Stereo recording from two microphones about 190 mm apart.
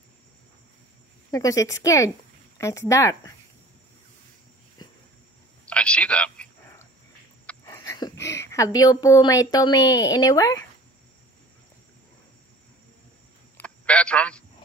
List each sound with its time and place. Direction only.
1.3 s a woman's voice: 20° left (ahead or behind)
5.7 s a man's voice: 5° left (ahead or behind)
13.6 s a sound: 5° left (ahead or behind)